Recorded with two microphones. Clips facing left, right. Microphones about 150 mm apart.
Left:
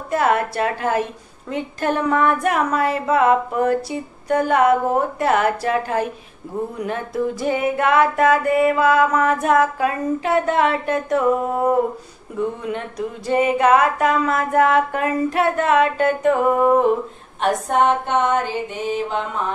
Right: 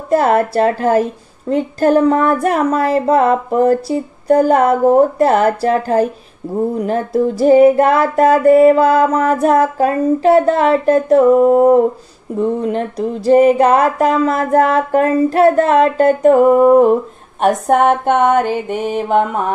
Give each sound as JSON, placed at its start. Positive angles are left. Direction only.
{"t": 0.1, "sound": "music", "side_deg": -40}
{"t": 17.4, "sound": "mantra", "side_deg": -55}